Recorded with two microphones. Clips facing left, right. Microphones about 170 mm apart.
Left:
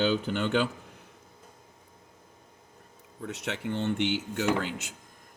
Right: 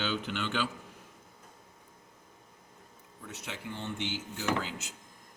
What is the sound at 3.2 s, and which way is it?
Speech, 65° left (ahead or behind).